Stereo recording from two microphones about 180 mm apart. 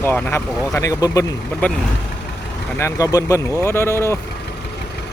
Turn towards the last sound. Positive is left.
turn(degrees=15)  # may be behind; listen again after turning